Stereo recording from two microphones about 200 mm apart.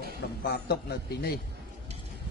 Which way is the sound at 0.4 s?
50° left (ahead or behind).